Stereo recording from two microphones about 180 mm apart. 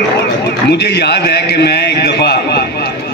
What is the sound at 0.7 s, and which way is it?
Speech, 70° left (ahead or behind).